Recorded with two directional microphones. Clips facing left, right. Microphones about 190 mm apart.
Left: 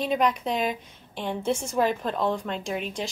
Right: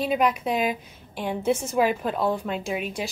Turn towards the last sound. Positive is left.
turn(degrees=-5)  # may be behind; listen again after turning